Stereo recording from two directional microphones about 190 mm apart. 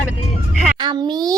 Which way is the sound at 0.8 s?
25° right (ahead or behind).